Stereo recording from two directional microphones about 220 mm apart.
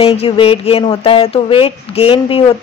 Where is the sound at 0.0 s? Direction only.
25° left (ahead or behind).